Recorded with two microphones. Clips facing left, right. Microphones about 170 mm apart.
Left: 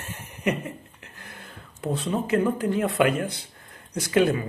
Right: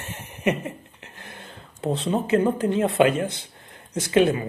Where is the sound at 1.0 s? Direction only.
25° right (ahead or behind).